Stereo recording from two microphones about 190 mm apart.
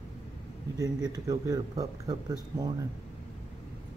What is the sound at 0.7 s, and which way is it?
Speech, 20° right (ahead or behind).